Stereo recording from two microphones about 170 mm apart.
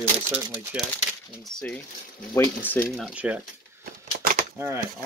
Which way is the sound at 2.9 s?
5° right (ahead or behind).